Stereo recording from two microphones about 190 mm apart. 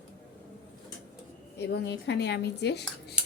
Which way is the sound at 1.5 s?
60° left (ahead or behind).